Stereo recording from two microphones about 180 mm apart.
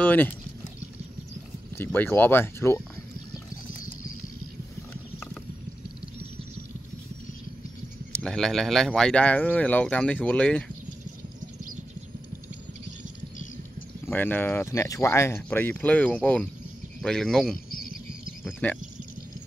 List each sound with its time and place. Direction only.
0.0 s speech: 10° left (ahead or behind)
1.8 s speech: 10° left (ahead or behind)
8.1 s speech: 5° left (ahead or behind)
14.0 s speech: 10° left (ahead or behind)
17.6 s cricket: 55° left (ahead or behind)